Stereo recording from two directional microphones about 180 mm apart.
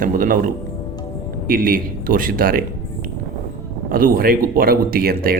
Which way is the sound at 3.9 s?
50° right (ahead or behind).